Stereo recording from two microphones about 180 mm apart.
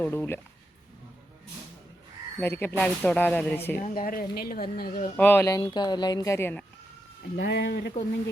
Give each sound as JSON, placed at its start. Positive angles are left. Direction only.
{"t": 0.0, "sound": "speech", "side_deg": 10}
{"t": 2.4, "sound": "speech", "side_deg": 15}
{"t": 3.8, "sound": "a woman's voice", "side_deg": 55}
{"t": 5.1, "sound": "speech", "side_deg": 10}
{"t": 7.3, "sound": "a woman's voice", "side_deg": 70}